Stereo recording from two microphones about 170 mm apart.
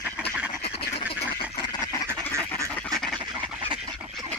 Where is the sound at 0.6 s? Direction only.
35° left (ahead or behind).